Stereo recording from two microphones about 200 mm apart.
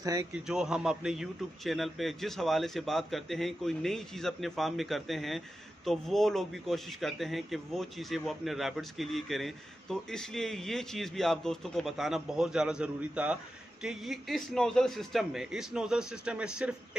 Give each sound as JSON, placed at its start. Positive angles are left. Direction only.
{"t": 0.0, "sound": "a man's voice", "side_deg": -15}
{"t": 0.5, "sound": "a man's voice", "side_deg": -5}